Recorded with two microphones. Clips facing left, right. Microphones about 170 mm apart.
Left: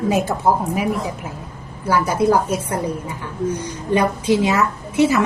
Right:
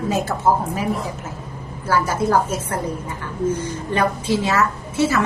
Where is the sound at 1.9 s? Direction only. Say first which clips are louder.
Left 2 dB; 15° left (ahead or behind).